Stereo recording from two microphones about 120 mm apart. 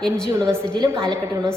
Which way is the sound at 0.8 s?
45° right (ahead or behind).